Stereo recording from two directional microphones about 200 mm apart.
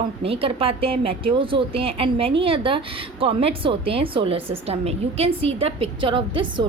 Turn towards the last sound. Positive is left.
turn(degrees=-25)  # may be behind; listen again after turning